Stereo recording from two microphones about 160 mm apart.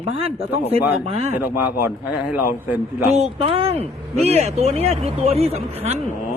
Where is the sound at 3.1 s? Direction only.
40° right (ahead or behind).